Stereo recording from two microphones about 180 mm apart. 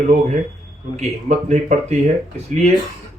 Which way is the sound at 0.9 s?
40° right (ahead or behind).